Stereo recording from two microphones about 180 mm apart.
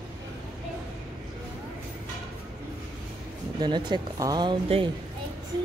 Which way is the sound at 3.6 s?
25° right (ahead or behind).